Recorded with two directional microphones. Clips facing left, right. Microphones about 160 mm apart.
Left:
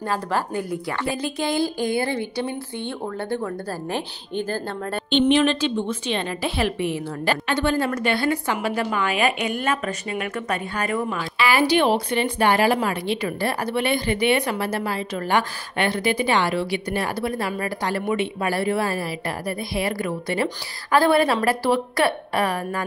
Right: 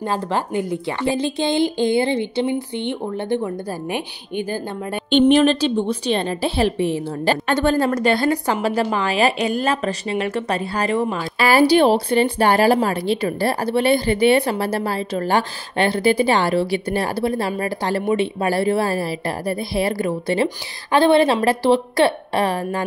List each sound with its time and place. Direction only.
0.0 s a woman's voice: 25° right (ahead or behind)
5.1 s speech: 40° right (ahead or behind)
7.4 s speech: 45° right (ahead or behind); by 11.2 s 25° right (ahead or behind)
11.3 s a woman's voice: 40° right (ahead or behind)